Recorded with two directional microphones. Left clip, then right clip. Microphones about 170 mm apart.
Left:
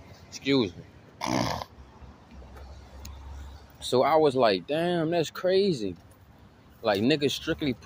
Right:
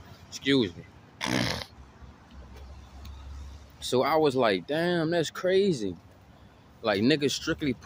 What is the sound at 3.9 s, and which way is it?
Speech, 20° right (ahead or behind).